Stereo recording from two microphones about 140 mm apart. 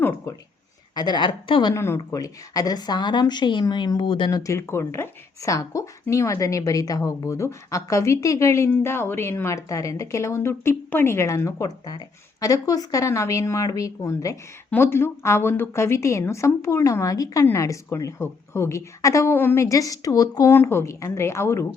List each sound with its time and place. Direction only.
0.0 s a sound: 15° left (ahead or behind)
0.9 s a woman's voice: 30° left (ahead or behind)
1.7 s a woman's voice: 20° left (ahead or behind)